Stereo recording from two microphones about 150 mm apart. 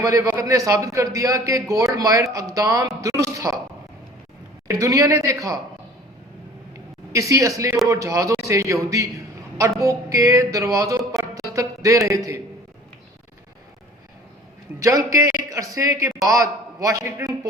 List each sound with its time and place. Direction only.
0.0 s a man's voice: 20° right (ahead or behind)
4.8 s a man's voice: 20° right (ahead or behind)
7.1 s a man's voice: 20° right (ahead or behind)
11.2 s music: 20° right (ahead or behind)
14.8 s a man's voice: 20° right (ahead or behind)